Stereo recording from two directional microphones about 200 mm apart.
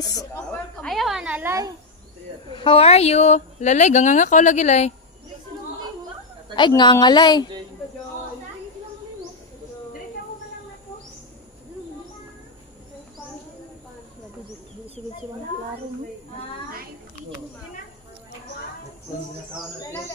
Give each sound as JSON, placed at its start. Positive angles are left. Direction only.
{"t": 0.0, "sound": "a woman's voice", "side_deg": 20}
{"t": 0.5, "sound": "snake", "side_deg": 5}
{"t": 2.5, "sound": "a woman's voice", "side_deg": 25}
{"t": 6.5, "sound": "a woman's voice", "side_deg": 20}